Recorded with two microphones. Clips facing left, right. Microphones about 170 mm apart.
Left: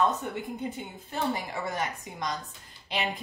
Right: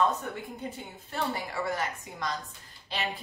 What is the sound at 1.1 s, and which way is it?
A woman's voice, 20° left (ahead or behind).